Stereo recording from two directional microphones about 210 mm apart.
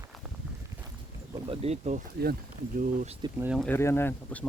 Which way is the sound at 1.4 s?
25° right (ahead or behind).